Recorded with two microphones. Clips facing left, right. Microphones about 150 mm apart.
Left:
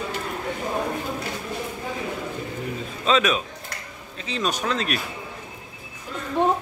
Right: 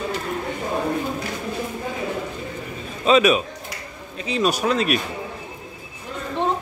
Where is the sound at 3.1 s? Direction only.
10° right (ahead or behind).